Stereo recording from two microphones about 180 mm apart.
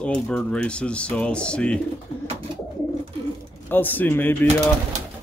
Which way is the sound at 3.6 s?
10° left (ahead or behind).